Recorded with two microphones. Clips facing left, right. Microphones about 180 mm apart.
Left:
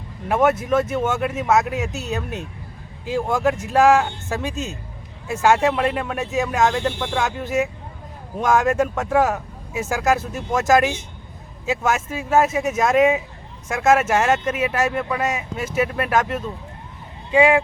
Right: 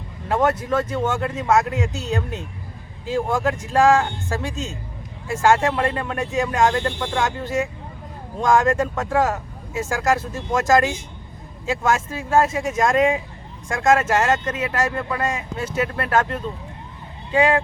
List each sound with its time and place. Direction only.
0.3 s a man's voice: 10° left (ahead or behind)
1.9 s speech: 20° left (ahead or behind)
3.1 s speech: 10° left (ahead or behind)